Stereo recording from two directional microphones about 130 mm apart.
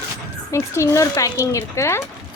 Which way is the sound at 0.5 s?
20° left (ahead or behind).